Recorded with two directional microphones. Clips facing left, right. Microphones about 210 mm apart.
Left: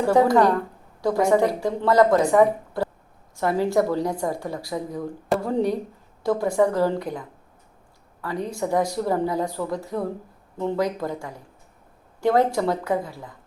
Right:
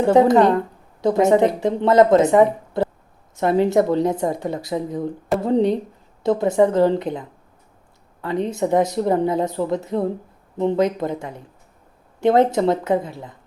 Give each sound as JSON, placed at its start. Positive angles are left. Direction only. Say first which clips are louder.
{"t": 0.0, "sound": "a woman's voice", "louder": "right 4 dB", "side_deg": -20}